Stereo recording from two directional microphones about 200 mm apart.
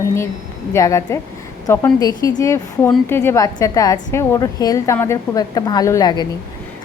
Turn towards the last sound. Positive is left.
turn(degrees=20)  # may be behind; listen again after turning